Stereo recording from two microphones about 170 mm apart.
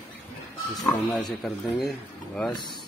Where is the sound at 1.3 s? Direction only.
Centre (ahead or behind).